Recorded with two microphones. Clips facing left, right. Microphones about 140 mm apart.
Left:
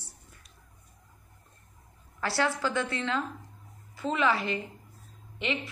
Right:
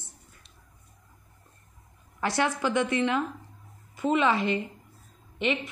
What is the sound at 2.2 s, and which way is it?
A woman's voice, 20° right (ahead or behind).